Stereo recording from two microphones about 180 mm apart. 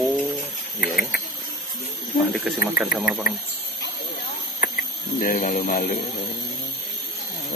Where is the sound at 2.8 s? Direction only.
5° right (ahead or behind).